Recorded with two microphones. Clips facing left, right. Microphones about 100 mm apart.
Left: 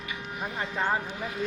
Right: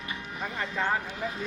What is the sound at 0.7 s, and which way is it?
Speech, 15° left (ahead or behind).